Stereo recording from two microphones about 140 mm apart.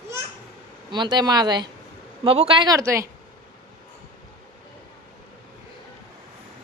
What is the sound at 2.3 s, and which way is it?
Speech, 40° right (ahead or behind).